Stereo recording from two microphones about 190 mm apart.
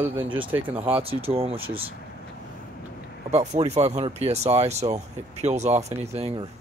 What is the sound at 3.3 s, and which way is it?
Speech, 35° right (ahead or behind).